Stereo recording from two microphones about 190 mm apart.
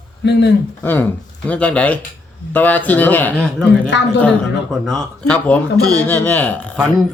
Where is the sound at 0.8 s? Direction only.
10° left (ahead or behind).